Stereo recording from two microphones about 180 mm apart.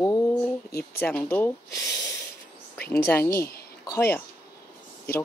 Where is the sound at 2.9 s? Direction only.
10° left (ahead or behind).